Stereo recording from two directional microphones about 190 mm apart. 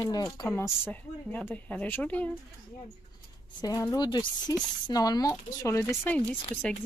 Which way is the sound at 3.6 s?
20° left (ahead or behind).